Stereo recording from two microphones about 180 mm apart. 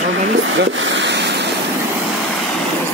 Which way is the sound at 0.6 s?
80° right.